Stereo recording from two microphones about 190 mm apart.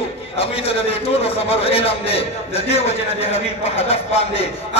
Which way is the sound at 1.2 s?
30° left (ahead or behind).